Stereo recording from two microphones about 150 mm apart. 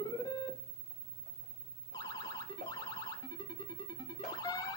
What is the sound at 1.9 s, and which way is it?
Car alarm, 25° left (ahead or behind).